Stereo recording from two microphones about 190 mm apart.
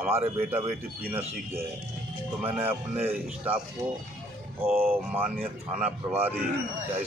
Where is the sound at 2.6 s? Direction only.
10° right (ahead or behind).